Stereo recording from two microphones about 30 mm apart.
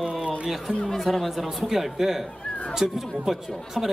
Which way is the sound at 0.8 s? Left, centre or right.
Centre.